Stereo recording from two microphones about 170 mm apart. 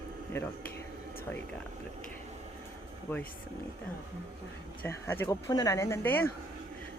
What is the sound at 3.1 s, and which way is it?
Speech, 10° left (ahead or behind).